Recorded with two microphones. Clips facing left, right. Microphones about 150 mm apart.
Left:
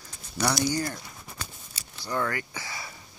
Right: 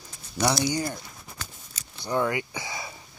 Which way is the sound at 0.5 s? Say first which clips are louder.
Right 1 dB; 15° right (ahead or behind).